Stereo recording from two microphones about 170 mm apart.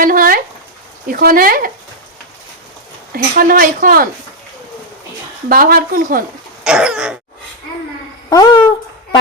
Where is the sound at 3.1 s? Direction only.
60° right (ahead or behind).